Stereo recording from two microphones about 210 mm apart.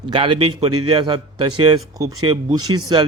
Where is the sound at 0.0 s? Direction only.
25° right (ahead or behind).